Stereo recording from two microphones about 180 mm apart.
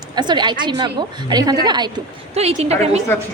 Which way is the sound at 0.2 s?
25° right (ahead or behind).